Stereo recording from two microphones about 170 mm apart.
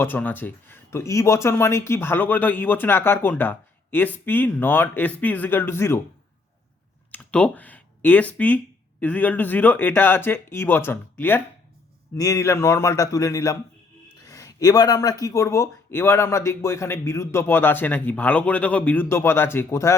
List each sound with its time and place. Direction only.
0.0 s speech: 10° left (ahead or behind)
7.1 s a man's voice: 10° left (ahead or behind)
14.3 s a sound: 20° left (ahead or behind)
15.2 s speech: 15° left (ahead or behind)